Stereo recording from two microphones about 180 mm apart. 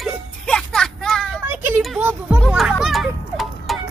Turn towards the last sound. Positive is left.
turn(degrees=0)  # may be behind; listen again after turning